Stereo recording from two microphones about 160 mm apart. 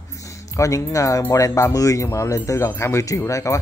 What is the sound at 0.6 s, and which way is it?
A man's voice, 20° left (ahead or behind).